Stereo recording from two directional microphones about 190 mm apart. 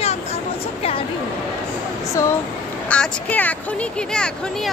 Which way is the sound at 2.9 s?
5° left (ahead or behind).